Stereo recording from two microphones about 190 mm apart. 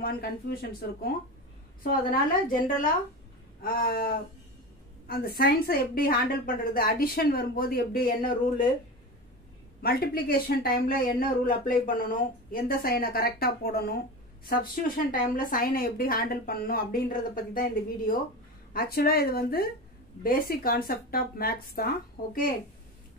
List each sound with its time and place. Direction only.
0.0 s speech: 55° left (ahead or behind)
3.6 s speech: 50° left (ahead or behind)
9.8 s speech: 55° left (ahead or behind)